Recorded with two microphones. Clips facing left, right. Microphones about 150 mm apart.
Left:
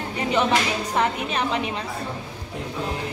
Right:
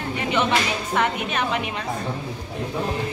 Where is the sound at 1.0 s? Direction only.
30° left (ahead or behind).